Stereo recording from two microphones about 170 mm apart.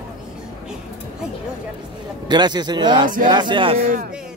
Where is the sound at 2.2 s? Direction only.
25° right (ahead or behind).